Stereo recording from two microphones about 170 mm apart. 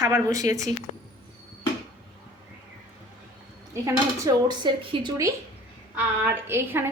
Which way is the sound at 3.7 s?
20° right (ahead or behind).